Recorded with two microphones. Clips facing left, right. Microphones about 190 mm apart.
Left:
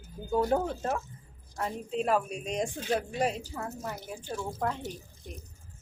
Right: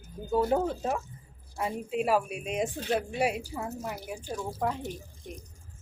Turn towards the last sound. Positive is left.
turn(degrees=-5)  # may be behind; listen again after turning